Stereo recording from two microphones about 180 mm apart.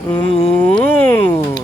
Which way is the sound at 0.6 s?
10° left (ahead or behind).